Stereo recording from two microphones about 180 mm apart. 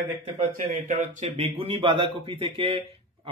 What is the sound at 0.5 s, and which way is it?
Speech, 45° right (ahead or behind).